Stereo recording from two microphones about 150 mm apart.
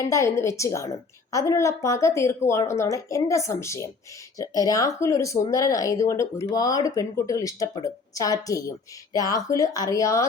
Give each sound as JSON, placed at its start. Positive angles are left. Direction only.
{"t": 0.1, "sound": "a woman's voice", "side_deg": 20}